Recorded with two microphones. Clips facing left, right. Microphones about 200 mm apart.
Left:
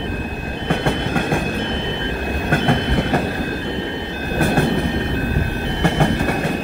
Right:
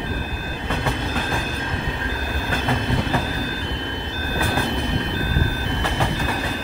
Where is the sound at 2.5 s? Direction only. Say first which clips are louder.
Left 5 dB; 60° left (ahead or behind).